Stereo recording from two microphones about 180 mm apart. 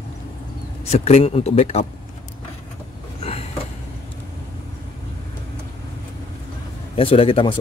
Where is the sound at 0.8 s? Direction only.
35° left (ahead or behind).